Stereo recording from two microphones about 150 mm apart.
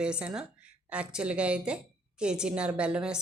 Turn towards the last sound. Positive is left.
turn(degrees=-5)  # may be behind; listen again after turning